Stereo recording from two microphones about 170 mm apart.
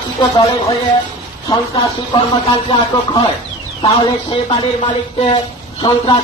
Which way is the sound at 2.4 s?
35° left (ahead or behind).